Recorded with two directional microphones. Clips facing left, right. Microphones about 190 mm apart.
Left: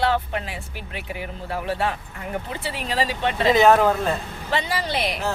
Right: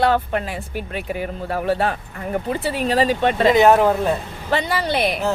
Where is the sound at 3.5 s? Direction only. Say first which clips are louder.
Right 1 dB; 20° right (ahead or behind).